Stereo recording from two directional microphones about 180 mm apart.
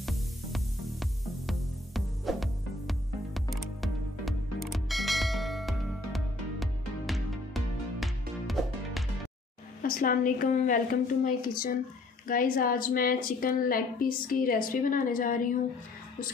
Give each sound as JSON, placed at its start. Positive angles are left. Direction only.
{"t": 0.0, "sound": "music", "side_deg": 0}
{"t": 9.8, "sound": "a woman's voice", "side_deg": 50}